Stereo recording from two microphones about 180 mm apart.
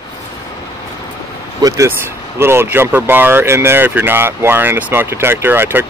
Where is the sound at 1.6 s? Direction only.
20° right (ahead or behind).